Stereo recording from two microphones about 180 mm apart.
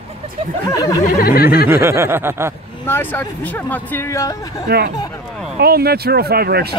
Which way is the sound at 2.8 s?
10° left (ahead or behind).